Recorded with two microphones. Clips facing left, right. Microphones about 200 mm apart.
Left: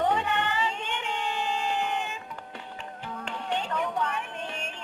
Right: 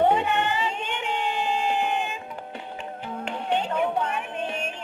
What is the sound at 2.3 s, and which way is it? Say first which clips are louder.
Music: right 5 dB; 20° right (ahead or behind).